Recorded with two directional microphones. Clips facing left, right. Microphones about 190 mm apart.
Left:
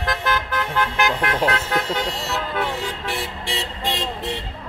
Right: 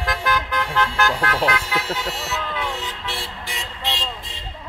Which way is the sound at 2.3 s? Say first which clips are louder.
Left 4 dB; 55° left (ahead or behind).